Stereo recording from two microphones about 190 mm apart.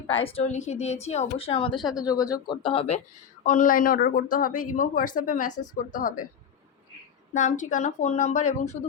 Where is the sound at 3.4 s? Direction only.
45° left (ahead or behind).